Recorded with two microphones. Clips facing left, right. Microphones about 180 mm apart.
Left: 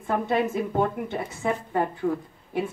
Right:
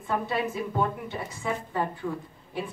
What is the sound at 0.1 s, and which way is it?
Speech, 50° left (ahead or behind).